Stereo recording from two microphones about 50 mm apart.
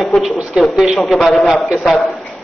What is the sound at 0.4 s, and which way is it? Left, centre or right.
A man's voice, centre.